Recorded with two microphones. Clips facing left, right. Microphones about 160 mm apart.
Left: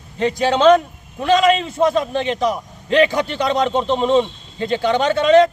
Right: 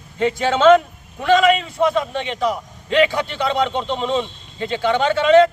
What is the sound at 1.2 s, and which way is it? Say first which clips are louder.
Speech: even; 30° left (ahead or behind).